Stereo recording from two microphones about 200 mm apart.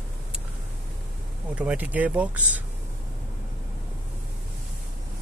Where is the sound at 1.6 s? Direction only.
5° right (ahead or behind).